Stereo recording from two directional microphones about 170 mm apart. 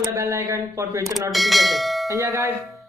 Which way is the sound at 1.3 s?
Centre (ahead or behind).